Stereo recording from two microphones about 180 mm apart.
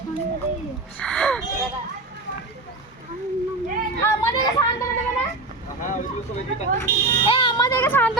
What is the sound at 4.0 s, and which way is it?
Chatter, 20° left (ahead or behind).